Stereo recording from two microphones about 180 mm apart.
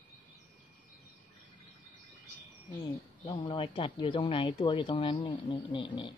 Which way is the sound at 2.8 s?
25° left (ahead or behind).